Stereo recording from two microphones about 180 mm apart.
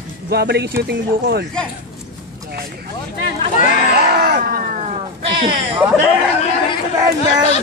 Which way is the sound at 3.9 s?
60° right (ahead or behind).